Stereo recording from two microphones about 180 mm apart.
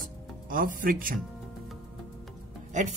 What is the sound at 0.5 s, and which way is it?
Speech, 50° right (ahead or behind).